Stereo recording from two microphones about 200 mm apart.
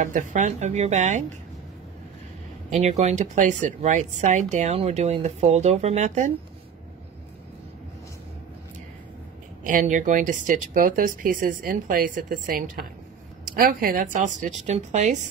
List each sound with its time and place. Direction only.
0.0 s speech: 40° right (ahead or behind)
2.7 s speech: 35° right (ahead or behind)
9.6 s speech: 40° right (ahead or behind)